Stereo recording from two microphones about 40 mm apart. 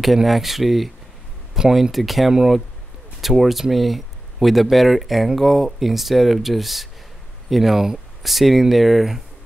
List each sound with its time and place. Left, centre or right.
0.0 s speech: centre